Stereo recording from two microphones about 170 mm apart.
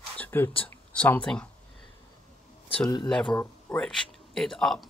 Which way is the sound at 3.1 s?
5° left (ahead or behind).